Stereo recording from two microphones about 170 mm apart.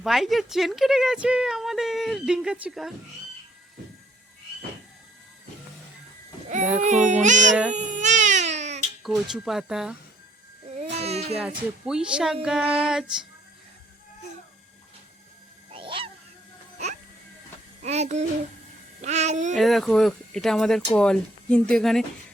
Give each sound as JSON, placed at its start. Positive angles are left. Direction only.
{"t": 0.0, "sound": "speech", "side_deg": 0}
{"t": 6.8, "sound": "a sound", "side_deg": -45}
{"t": 7.7, "sound": "baby cry", "side_deg": -45}
{"t": 9.0, "sound": "speech", "side_deg": 0}
{"t": 10.9, "sound": "baby cry", "side_deg": -40}
{"t": 11.3, "sound": "speech", "side_deg": -5}
{"t": 15.7, "sound": "goose", "side_deg": -30}
{"t": 17.8, "sound": "a child's voice", "side_deg": -40}
{"t": 19.0, "sound": "a sound", "side_deg": -40}
{"t": 19.5, "sound": "speech", "side_deg": 0}